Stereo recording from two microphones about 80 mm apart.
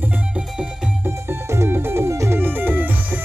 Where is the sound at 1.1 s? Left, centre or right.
Right.